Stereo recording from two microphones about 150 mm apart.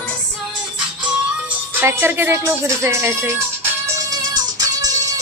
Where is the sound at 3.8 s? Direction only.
20° right (ahead or behind).